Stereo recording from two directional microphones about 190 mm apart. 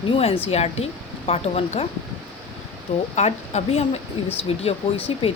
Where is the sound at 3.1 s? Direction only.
35° left (ahead or behind).